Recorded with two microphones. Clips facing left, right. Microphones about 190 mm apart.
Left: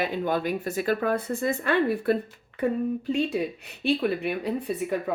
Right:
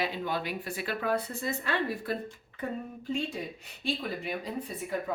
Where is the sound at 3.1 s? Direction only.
70° left (ahead or behind).